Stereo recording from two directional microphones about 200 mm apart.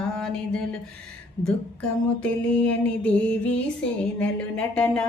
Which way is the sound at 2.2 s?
5° left (ahead or behind).